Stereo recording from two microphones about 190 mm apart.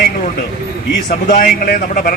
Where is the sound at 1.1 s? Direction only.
45° left (ahead or behind).